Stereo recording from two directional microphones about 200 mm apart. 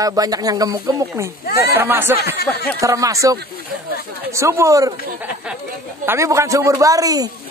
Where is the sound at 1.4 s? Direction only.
50° left (ahead or behind).